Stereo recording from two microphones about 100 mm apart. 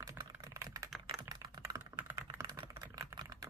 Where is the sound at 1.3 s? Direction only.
40° right (ahead or behind).